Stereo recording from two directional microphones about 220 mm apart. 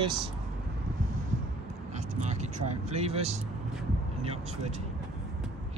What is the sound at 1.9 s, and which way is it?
Vehicle, 30° right (ahead or behind).